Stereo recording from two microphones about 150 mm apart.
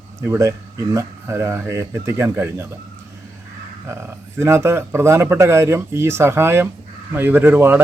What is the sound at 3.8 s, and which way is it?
Speech, 15° right (ahead or behind).